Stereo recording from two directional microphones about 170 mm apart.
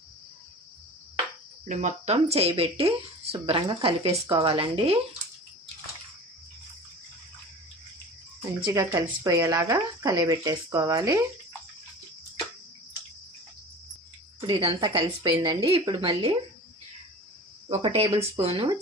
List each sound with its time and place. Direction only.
1.6 s speech: 45° right (ahead or behind)
8.6 s speech: 20° right (ahead or behind)
14.4 s speech: 25° right (ahead or behind)
17.7 s speech: 35° right (ahead or behind)